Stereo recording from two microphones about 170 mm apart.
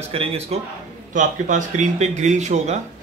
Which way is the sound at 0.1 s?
35° right (ahead or behind).